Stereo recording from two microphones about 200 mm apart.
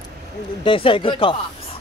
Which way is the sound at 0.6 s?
25° left (ahead or behind).